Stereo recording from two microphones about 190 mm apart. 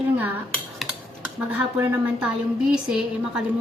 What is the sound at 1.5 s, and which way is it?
A woman's voice, 5° right (ahead or behind).